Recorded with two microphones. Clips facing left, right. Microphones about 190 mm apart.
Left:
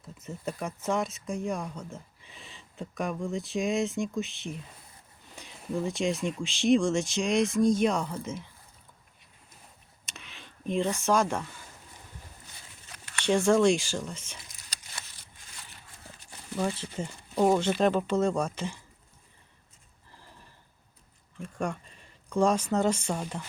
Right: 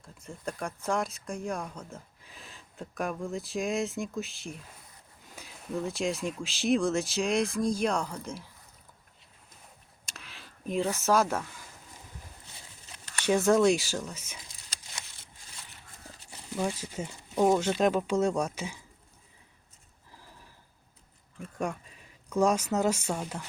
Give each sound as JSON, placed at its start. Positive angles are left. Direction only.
{"t": 0.0, "sound": "speech", "side_deg": 5}
{"t": 10.1, "sound": "a sound", "side_deg": 0}
{"t": 13.2, "sound": "speech", "side_deg": -5}
{"t": 14.9, "sound": "a sound", "side_deg": -25}
{"t": 16.6, "sound": "speech", "side_deg": -10}
{"t": 21.3, "sound": "speech", "side_deg": -5}